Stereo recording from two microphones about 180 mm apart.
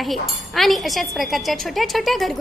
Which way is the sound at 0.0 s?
Centre (ahead or behind).